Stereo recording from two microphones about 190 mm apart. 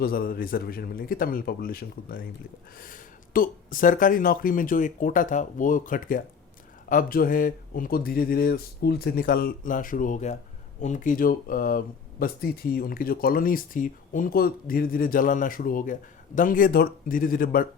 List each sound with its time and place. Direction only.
0.0 s speech: 50° left (ahead or behind)